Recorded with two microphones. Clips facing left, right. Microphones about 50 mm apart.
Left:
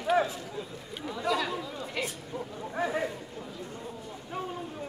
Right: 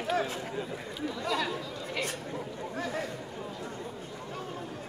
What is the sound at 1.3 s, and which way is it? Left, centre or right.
Chatter, centre.